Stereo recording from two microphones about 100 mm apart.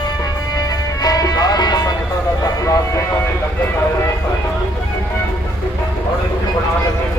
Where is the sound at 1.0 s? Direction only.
40° left (ahead or behind).